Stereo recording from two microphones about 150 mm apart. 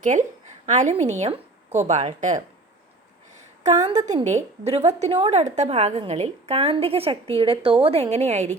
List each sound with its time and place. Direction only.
0.0 s a woman's voice: 55° right (ahead or behind)
3.8 s a woman's voice: 50° right (ahead or behind)